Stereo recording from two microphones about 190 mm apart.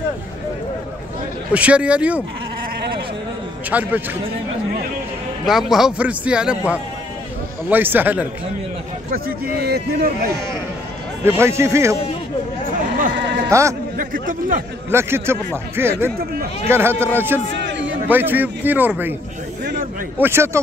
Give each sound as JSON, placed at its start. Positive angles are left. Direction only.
{"t": 1.5, "sound": "a man's voice", "side_deg": -5}
{"t": 3.7, "sound": "a man's voice", "side_deg": -10}
{"t": 5.4, "sound": "a man's voice", "side_deg": 0}
{"t": 7.7, "sound": "a man's voice", "side_deg": -10}
{"t": 9.1, "sound": "speech", "side_deg": -55}
{"t": 11.2, "sound": "a man's voice", "side_deg": -15}
{"t": 13.1, "sound": "sheep", "side_deg": -65}
{"t": 13.5, "sound": "a man's voice", "side_deg": -15}
{"t": 13.9, "sound": "speech", "side_deg": -45}
{"t": 14.9, "sound": "a man's voice", "side_deg": -15}
{"t": 17.6, "sound": "a sound", "side_deg": -70}
{"t": 18.0, "sound": "a man's voice", "side_deg": -10}
{"t": 19.6, "sound": "a sound", "side_deg": -55}
{"t": 20.2, "sound": "a man's voice", "side_deg": -10}